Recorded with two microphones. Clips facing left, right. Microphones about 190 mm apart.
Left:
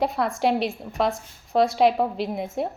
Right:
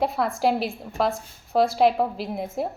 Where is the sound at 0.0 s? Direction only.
Centre (ahead or behind).